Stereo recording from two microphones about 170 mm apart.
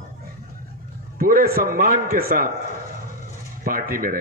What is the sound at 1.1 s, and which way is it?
A man's voice, 55° right (ahead or behind).